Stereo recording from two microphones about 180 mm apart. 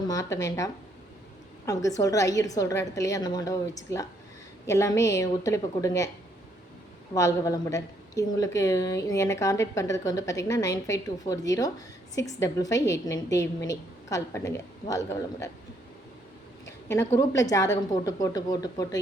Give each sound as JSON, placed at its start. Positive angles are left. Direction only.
{"t": 0.1, "sound": "a woman's voice", "side_deg": 20}
{"t": 7.1, "sound": "a woman's voice", "side_deg": 15}
{"t": 16.6, "sound": "a sound", "side_deg": 15}
{"t": 17.2, "sound": "a woman's voice", "side_deg": 20}